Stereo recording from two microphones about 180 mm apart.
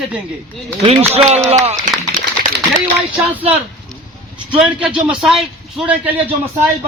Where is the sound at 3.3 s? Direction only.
10° right (ahead or behind).